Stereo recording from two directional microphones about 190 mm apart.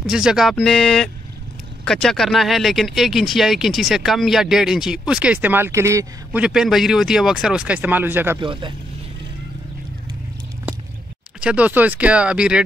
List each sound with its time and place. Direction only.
0.0 s speech: 5° right (ahead or behind)
6.4 s speech: centre (ahead or behind)
8.4 s speech: 25° right (ahead or behind)
11.4 s speech: 5° right (ahead or behind)